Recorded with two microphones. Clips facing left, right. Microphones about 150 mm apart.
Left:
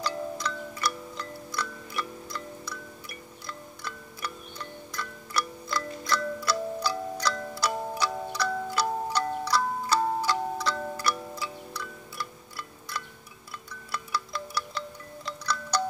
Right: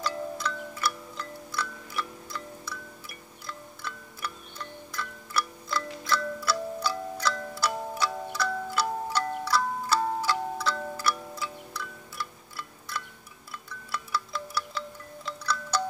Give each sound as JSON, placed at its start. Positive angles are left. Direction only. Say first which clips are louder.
{"t": 0.0, "sound": "music", "louder": "even", "side_deg": 0}
{"t": 9.9, "sound": "clock", "louder": "left 1 dB", "side_deg": 0}
{"t": 13.7, "sound": "wind chime", "louder": "even", "side_deg": 0}